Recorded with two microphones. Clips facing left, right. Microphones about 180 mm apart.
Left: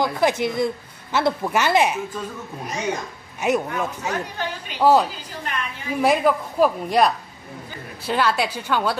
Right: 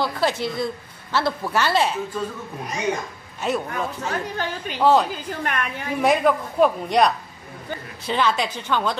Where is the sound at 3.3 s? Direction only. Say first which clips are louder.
Left 3 dB; 15° left (ahead or behind).